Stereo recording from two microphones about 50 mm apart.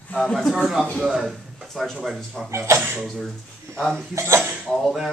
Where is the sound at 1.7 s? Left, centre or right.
Centre.